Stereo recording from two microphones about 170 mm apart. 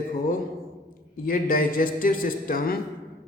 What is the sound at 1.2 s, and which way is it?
A man's voice, 55° left (ahead or behind).